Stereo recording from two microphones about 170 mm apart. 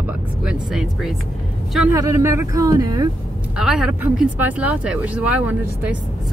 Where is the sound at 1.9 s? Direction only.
20° right (ahead or behind).